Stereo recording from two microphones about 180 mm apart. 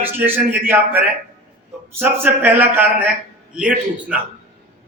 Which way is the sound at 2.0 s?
10° right (ahead or behind).